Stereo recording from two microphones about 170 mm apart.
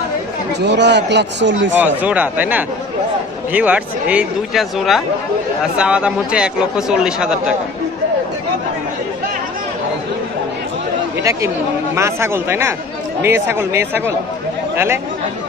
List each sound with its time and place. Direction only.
0.5 s speech: 85° right
1.8 s speech: 10° right (ahead or behind)
11.1 s speech: 15° right (ahead or behind)